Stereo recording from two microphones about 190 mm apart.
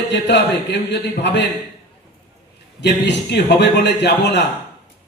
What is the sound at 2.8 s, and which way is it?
A man's voice, 65° left (ahead or behind).